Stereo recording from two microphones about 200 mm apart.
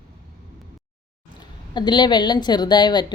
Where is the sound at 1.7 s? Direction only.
20° left (ahead or behind).